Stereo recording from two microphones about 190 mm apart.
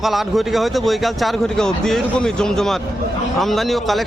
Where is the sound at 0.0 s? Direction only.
Centre (ahead or behind).